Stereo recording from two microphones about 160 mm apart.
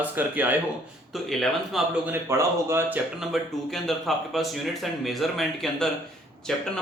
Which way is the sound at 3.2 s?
Centre (ahead or behind).